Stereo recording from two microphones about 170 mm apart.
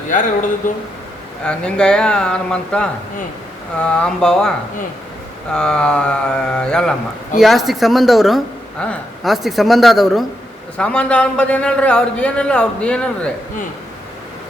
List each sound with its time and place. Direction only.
0.6 s speech: 50° left (ahead or behind)
1.5 s speech: 5° left (ahead or behind)
5.5 s a man's voice: 5° left (ahead or behind)